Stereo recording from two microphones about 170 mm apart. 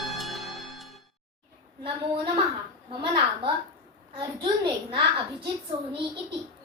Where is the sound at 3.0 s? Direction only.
30° right (ahead or behind).